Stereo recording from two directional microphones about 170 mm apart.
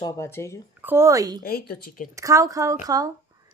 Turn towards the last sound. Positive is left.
turn(degrees=-20)  # may be behind; listen again after turning